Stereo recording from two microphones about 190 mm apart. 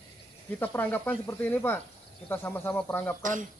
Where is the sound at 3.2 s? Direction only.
40° right (ahead or behind).